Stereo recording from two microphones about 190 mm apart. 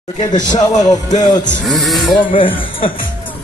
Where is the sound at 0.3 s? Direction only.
20° left (ahead or behind).